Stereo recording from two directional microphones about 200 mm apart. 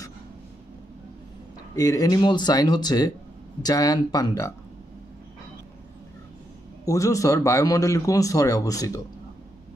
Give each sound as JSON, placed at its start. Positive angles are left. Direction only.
{"t": 1.8, "sound": "a man's voice", "side_deg": 20}
{"t": 6.9, "sound": "a man's voice", "side_deg": 15}